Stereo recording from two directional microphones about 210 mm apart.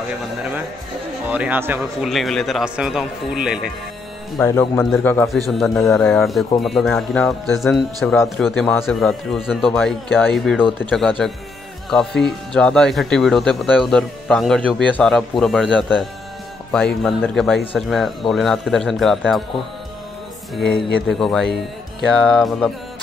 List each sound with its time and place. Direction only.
0.4 s speech: 5° right (ahead or behind)
4.4 s speech: 10° left (ahead or behind)
6.0 s speech: centre (ahead or behind)
21.1 s speech: centre (ahead or behind)